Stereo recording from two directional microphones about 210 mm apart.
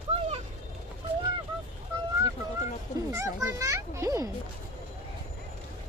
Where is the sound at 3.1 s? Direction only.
15° right (ahead or behind).